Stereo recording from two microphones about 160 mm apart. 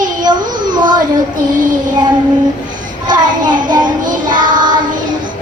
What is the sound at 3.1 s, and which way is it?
Child singing, 25° right (ahead or behind).